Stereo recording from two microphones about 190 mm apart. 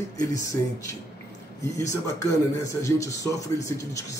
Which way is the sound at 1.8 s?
15° left (ahead or behind).